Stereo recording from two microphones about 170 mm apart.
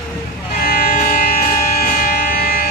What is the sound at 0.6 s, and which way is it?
Music, 55° left (ahead or behind).